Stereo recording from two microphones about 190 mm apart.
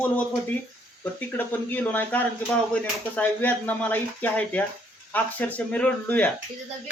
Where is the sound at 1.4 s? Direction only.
10° left (ahead or behind).